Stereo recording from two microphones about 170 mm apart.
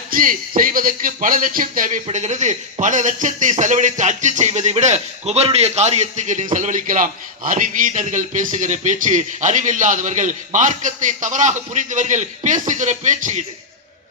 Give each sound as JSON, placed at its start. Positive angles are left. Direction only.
{"t": 0.1, "sound": "speech", "side_deg": -55}
{"t": 2.0, "sound": "speech", "side_deg": -40}